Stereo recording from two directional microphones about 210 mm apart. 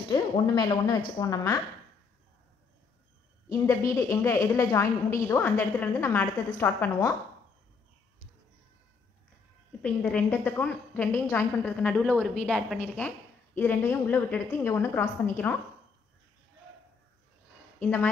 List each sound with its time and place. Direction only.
0.1 s a woman's voice: 20° left (ahead or behind)
3.4 s a woman's voice: 15° left (ahead or behind)
9.8 s a woman's voice: 5° left (ahead or behind)
17.7 s speech: 5° left (ahead or behind)